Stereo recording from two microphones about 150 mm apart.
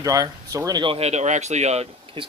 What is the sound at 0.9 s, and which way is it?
Speech, 45° right (ahead or behind).